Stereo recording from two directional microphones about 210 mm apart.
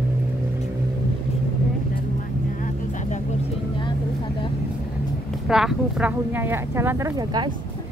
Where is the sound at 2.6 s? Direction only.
35° left (ahead or behind).